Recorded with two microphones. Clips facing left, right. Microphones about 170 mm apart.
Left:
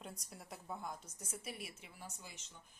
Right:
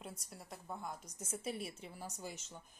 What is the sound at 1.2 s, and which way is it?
A woman's voice, 25° right (ahead or behind).